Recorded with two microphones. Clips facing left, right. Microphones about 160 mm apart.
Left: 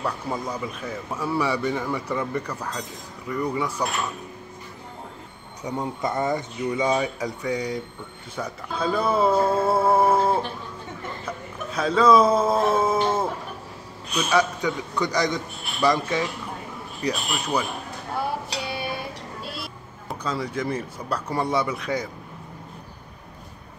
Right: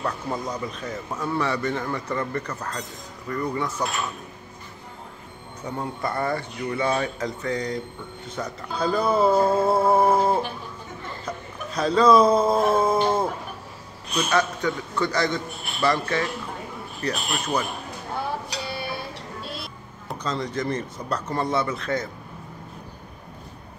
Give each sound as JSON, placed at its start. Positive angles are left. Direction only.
{"t": 0.0, "sound": "a man's voice", "side_deg": 10}
{"t": 5.6, "sound": "a man's voice", "side_deg": 15}
{"t": 11.2, "sound": "a sound", "side_deg": 5}
{"t": 14.1, "sound": "a man's voice", "side_deg": 10}
{"t": 18.7, "sound": "music", "side_deg": 15}
{"t": 20.1, "sound": "a man's voice", "side_deg": 5}